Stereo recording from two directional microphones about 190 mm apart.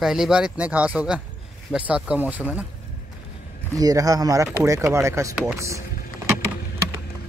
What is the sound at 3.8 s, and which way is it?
Speech, 20° right (ahead or behind).